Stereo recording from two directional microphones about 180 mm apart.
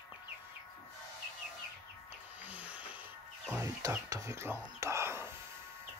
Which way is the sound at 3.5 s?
15° right (ahead or behind).